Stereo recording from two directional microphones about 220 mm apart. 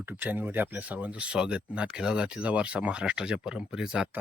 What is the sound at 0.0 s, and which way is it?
Speech, 10° right (ahead or behind).